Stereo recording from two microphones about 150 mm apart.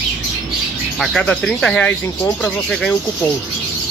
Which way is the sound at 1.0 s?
5° left (ahead or behind).